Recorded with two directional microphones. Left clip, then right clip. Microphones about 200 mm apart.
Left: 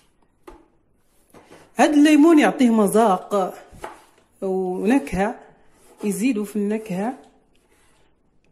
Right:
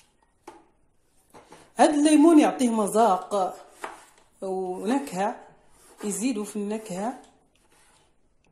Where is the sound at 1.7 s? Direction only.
25° left (ahead or behind).